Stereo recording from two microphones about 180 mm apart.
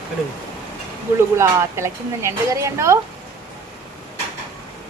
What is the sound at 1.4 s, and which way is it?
A woman's voice, 15° right (ahead or behind).